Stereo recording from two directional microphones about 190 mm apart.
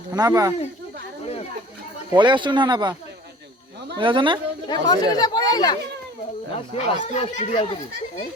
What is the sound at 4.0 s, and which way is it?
Speech, 25° right (ahead or behind).